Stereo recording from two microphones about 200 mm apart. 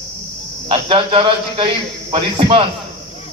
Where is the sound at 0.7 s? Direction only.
25° right (ahead or behind).